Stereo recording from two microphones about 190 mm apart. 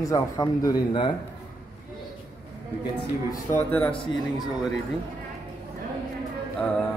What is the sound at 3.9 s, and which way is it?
Speech, 20° left (ahead or behind).